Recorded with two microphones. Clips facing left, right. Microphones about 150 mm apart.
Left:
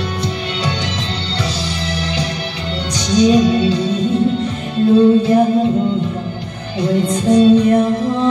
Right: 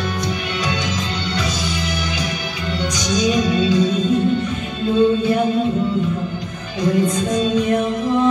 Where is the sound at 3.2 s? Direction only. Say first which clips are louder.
Left 6 dB; 30° left (ahead or behind).